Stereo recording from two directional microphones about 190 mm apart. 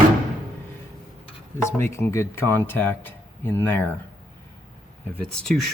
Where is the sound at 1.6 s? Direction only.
15° left (ahead or behind).